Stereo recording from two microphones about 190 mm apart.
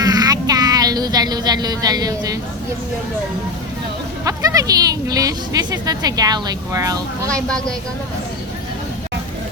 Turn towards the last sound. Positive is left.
turn(degrees=5)  # may be behind; listen again after turning